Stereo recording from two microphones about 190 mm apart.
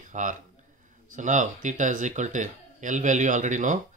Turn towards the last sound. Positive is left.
turn(degrees=-40)  # may be behind; listen again after turning